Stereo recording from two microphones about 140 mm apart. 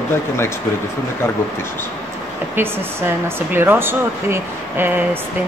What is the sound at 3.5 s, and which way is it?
Speech, 15° right (ahead or behind).